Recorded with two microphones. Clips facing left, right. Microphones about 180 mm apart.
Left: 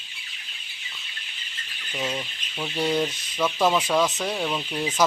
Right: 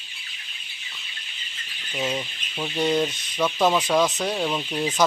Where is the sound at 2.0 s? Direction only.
10° right (ahead or behind).